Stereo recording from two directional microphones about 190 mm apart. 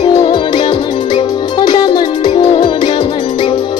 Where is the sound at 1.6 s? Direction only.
25° left (ahead or behind).